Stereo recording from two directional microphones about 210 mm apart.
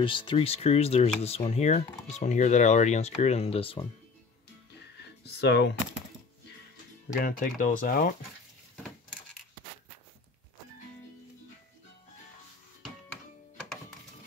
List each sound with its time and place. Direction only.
0.0 s speech: 25° left (ahead or behind)
5.2 s speech: 55° left (ahead or behind)
7.2 s speech: 40° left (ahead or behind)